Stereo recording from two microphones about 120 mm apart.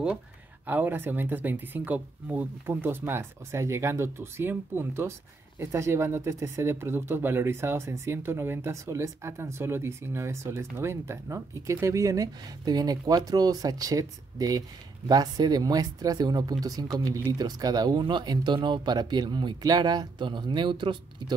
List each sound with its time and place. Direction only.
0.7 s speech: 15° right (ahead or behind); by 21.0 s 40° right (ahead or behind)